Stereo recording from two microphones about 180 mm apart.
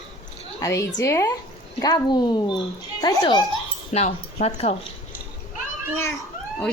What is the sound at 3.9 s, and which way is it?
Speech, 35° left (ahead or behind).